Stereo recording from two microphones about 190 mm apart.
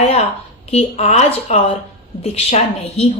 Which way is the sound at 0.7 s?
35° left (ahead or behind).